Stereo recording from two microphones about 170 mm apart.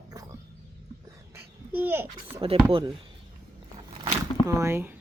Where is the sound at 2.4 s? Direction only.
35° right (ahead or behind).